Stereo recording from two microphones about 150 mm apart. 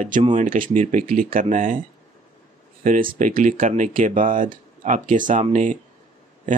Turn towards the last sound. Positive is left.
turn(degrees=-55)  # may be behind; listen again after turning